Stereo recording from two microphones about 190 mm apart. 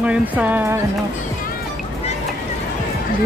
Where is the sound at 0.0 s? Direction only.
5° right (ahead or behind).